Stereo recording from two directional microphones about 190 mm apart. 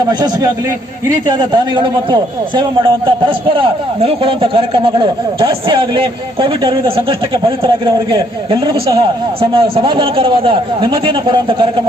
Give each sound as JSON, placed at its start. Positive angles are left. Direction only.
{"t": 1.0, "sound": "a man's voice", "side_deg": -25}